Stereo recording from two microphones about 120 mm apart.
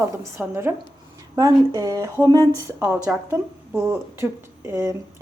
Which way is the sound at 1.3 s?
35° right (ahead or behind).